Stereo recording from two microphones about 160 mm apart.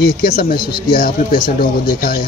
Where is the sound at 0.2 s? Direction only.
65° left (ahead or behind).